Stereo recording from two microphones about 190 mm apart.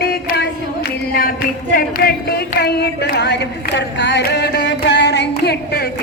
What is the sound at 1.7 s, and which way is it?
A woman's voice, 50° left (ahead or behind).